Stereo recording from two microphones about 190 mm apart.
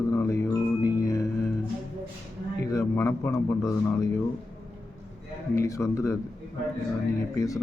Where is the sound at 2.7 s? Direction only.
10° left (ahead or behind).